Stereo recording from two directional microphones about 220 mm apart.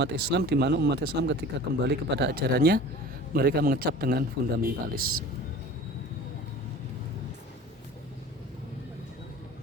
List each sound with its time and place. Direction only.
0.0 s speech: 50° right (ahead or behind)